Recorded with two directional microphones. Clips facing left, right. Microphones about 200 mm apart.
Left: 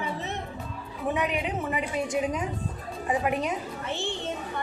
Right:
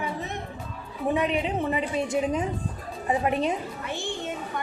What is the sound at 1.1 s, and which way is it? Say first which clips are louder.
Speech: right 4 dB; 25° right (ahead or behind).